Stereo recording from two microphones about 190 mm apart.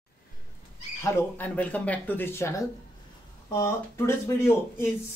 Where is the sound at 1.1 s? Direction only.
10° left (ahead or behind).